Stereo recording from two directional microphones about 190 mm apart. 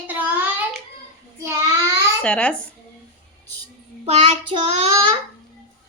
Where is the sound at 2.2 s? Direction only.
5° left (ahead or behind).